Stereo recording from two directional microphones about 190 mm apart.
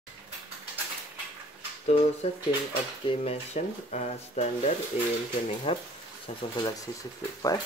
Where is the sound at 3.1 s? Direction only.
35° left (ahead or behind).